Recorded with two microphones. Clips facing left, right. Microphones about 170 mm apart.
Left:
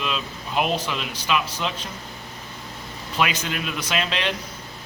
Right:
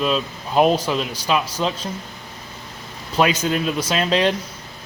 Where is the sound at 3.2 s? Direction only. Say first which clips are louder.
Right 7 dB; 40° right (ahead or behind).